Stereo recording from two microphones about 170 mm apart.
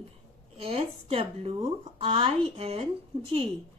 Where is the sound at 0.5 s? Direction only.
35° right (ahead or behind).